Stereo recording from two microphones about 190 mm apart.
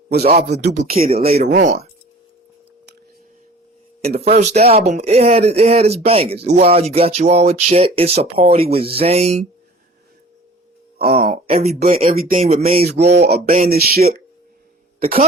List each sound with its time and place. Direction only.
0.1 s speech: 35° right (ahead or behind)
0.6 s speech: 55° right (ahead or behind)
1.1 s speech: 30° right (ahead or behind)
1.4 s speech: 45° right (ahead or behind)
4.2 s speech: 35° right (ahead or behind)
11.0 s speech: 50° right (ahead or behind)
11.3 s speech: 35° right (ahead or behind)
13.1 s speech: 55° right (ahead or behind)